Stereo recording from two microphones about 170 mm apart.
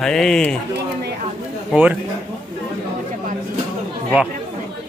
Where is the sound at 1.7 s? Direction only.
10° right (ahead or behind).